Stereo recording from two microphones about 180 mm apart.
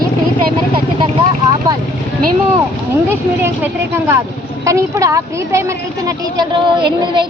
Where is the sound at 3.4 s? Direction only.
15° right (ahead or behind).